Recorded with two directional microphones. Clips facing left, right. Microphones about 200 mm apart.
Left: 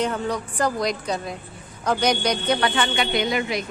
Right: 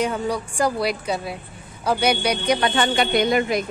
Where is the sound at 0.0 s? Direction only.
10° right (ahead or behind).